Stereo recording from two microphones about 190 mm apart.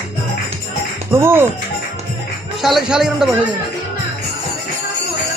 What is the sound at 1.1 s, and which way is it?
Speech, 10° right (ahead or behind).